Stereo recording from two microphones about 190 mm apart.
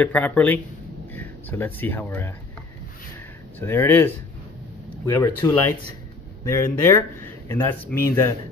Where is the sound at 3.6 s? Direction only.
10° left (ahead or behind).